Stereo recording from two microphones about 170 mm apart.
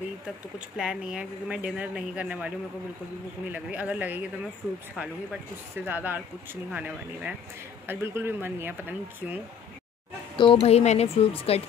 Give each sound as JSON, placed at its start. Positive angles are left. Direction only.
{"t": 0.7, "sound": "speech", "side_deg": -5}
{"t": 10.3, "sound": "speech", "side_deg": 30}